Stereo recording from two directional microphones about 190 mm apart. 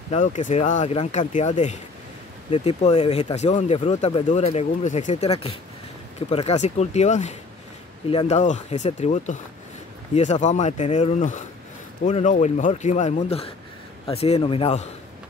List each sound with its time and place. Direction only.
0.1 s speech: 40° left (ahead or behind)